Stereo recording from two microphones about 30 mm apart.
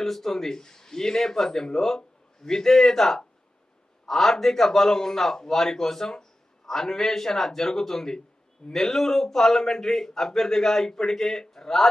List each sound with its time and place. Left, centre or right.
0.0 s a man's voice: centre